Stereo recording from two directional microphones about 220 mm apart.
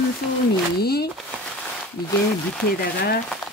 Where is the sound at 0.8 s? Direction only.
45° left (ahead or behind).